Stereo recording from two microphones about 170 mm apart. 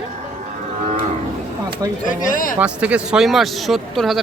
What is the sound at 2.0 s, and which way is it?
Speech, 50° left (ahead or behind).